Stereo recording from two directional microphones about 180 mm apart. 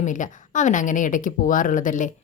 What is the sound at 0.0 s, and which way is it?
Speech, 45° left (ahead or behind).